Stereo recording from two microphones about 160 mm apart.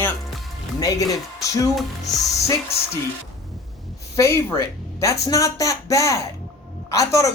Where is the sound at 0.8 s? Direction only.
20° left (ahead or behind).